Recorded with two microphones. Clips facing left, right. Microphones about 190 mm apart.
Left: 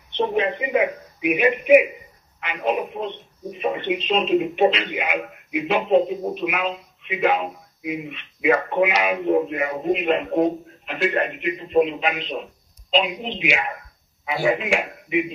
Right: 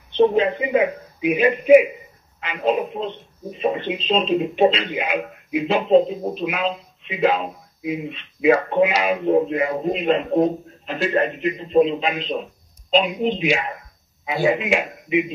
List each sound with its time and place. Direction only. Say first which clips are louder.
0.1 s speech: right 5 dB; 30° right (ahead or behind)
12.9 s speech: right 4 dB; 45° right (ahead or behind)
14.2 s speech: right 2 dB; 20° right (ahead or behind)